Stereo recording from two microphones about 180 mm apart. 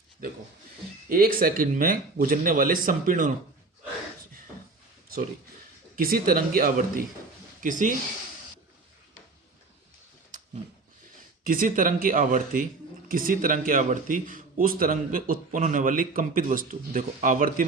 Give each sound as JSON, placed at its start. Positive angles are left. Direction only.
{"t": 0.2, "sound": "a man's voice", "side_deg": -55}
{"t": 6.0, "sound": "a man's voice", "side_deg": -55}
{"t": 11.4, "sound": "a man's voice", "side_deg": -50}